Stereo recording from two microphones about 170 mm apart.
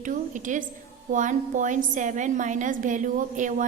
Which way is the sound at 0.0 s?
50° right (ahead or behind).